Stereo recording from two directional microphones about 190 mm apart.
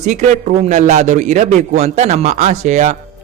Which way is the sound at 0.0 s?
35° right (ahead or behind).